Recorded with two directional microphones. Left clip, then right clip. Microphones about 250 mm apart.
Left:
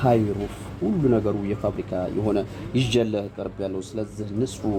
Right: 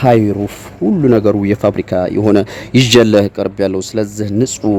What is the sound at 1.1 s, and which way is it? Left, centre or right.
Speech, right.